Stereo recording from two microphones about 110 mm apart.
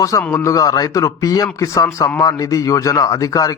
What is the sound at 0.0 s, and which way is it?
A man's voice, 30° left (ahead or behind).